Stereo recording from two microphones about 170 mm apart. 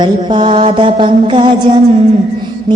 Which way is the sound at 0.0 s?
30° right (ahead or behind).